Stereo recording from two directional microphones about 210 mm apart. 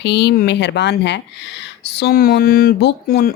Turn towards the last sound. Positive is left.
turn(degrees=45)  # may be behind; listen again after turning